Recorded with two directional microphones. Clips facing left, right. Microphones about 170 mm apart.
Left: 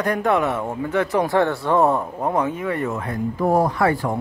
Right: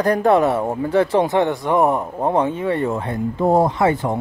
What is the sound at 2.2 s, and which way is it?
Speech, 30° right (ahead or behind).